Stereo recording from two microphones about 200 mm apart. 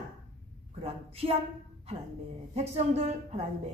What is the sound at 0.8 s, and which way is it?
Speech, 30° right (ahead or behind).